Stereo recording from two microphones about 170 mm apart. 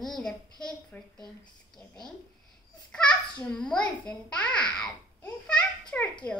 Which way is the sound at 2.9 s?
5° left (ahead or behind).